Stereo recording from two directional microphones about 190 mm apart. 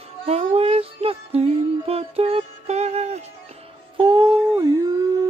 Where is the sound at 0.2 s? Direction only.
30° right (ahead or behind).